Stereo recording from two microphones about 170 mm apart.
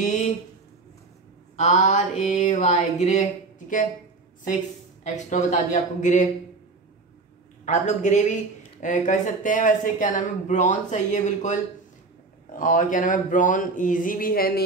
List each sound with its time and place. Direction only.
1.6 s speech: 45° left (ahead or behind)
5.1 s speech: 45° left (ahead or behind)
7.6 s speech: 45° left (ahead or behind)
12.5 s speech: 50° left (ahead or behind)